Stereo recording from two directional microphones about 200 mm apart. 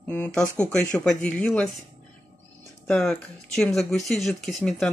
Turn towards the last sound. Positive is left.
turn(degrees=0)  # may be behind; listen again after turning